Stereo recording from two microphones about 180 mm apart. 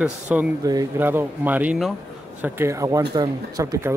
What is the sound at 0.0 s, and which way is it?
Speech, 5° right (ahead or behind).